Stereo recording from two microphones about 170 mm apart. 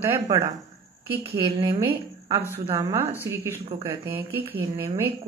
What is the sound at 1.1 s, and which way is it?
A woman's voice, 30° right (ahead or behind).